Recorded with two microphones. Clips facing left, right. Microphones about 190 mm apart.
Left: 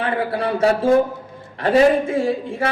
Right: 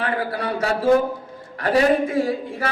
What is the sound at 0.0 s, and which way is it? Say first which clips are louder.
Speech: left 3 dB; 25° left (ahead or behind).